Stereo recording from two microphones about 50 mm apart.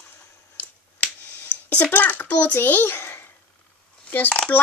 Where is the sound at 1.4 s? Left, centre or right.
Left.